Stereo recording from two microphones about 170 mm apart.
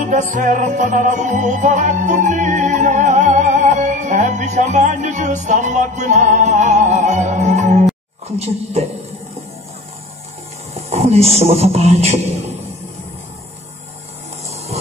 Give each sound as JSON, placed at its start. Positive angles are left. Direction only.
{"t": 0.3, "sound": "music", "side_deg": -50}
{"t": 8.3, "sound": "speech", "side_deg": -40}
{"t": 10.7, "sound": "a man's voice", "side_deg": -40}